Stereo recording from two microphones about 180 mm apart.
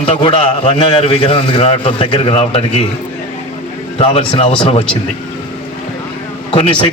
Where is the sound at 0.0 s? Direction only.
30° left (ahead or behind).